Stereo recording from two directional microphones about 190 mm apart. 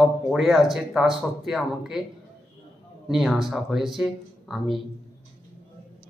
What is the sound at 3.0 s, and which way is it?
Speech, centre (ahead or behind).